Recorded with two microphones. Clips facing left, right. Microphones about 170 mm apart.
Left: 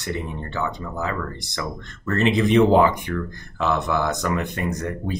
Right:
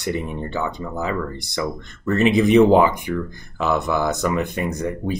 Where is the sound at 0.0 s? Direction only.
15° right (ahead or behind).